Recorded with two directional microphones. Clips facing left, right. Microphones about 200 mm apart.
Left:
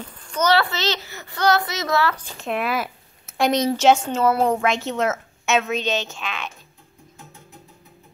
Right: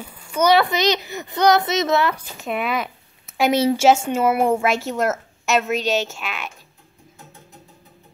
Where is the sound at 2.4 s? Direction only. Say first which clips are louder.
Even; centre (ahead or behind).